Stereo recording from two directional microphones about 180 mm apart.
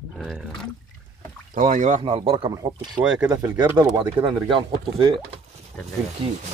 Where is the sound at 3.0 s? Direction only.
5° right (ahead or behind).